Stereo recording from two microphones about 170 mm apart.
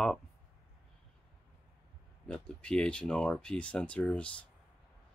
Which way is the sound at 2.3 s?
5° left (ahead or behind).